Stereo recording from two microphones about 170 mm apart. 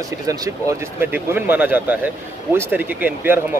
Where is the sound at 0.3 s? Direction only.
15° right (ahead or behind).